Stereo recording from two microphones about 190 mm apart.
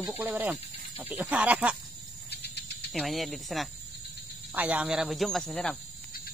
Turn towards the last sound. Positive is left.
turn(degrees=0)  # may be behind; listen again after turning